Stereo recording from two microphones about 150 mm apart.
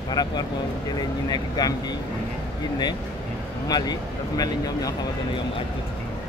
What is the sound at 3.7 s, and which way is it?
Speech, 25° left (ahead or behind).